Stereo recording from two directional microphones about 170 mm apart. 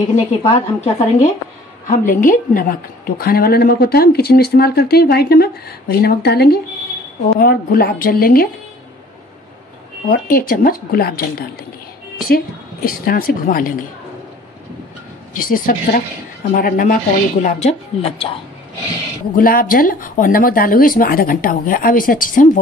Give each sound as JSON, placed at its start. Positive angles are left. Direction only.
{"t": 0.1, "sound": "a woman's voice", "side_deg": 40}
{"t": 7.3, "sound": "a woman's voice", "side_deg": 60}
{"t": 10.0, "sound": "a woman's voice", "side_deg": 60}
{"t": 12.8, "sound": "a woman's voice", "side_deg": 60}
{"t": 15.4, "sound": "a woman's voice", "side_deg": 55}
{"t": 19.3, "sound": "a woman's voice", "side_deg": 55}